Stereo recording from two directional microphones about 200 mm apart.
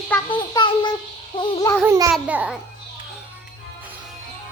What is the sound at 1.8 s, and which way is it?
Child singing, 15° right (ahead or behind).